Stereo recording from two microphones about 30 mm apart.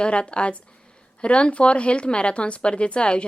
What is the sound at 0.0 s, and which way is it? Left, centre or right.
Speech, left.